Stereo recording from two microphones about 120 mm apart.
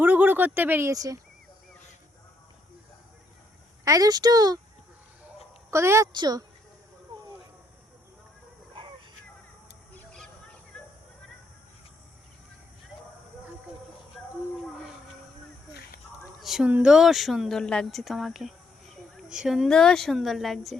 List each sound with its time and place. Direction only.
0.0 s speech: 15° right (ahead or behind)
3.8 s speech: 30° right (ahead or behind)
5.7 s a woman's voice: 25° right (ahead or behind)
6.1 s speech: 35° right (ahead or behind)
16.4 s a sound: centre (ahead or behind)
16.6 s speech: 10° right (ahead or behind)